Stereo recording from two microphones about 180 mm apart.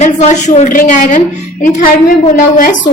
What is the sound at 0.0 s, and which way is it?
A woman's voice, 40° left (ahead or behind).